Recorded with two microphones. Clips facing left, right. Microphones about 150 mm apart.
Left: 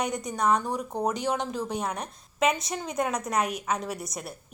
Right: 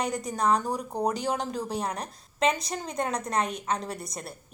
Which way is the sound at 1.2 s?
40° right (ahead or behind).